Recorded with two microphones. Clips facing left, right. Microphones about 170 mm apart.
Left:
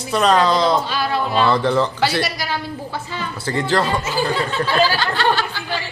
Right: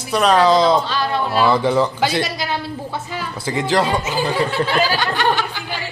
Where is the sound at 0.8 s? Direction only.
10° left (ahead or behind).